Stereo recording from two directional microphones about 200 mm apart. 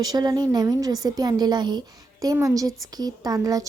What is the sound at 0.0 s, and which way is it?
Speech, 20° right (ahead or behind).